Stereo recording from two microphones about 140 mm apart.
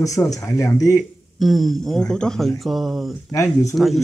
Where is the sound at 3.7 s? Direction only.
Centre (ahead or behind).